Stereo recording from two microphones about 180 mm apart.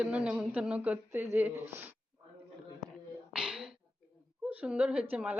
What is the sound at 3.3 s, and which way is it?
Sneeze, 5° right (ahead or behind).